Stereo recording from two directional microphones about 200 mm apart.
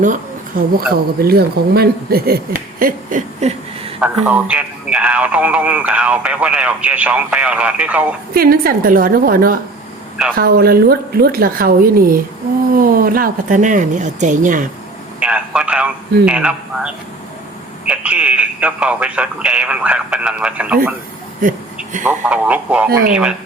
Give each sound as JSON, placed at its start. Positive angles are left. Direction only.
{"t": 0.0, "sound": "speech", "side_deg": -40}
{"t": 4.0, "sound": "a man's voice", "side_deg": -5}
{"t": 8.3, "sound": "speech", "side_deg": -50}
{"t": 15.2, "sound": "speech", "side_deg": -5}
{"t": 22.0, "sound": "a man's voice", "side_deg": -5}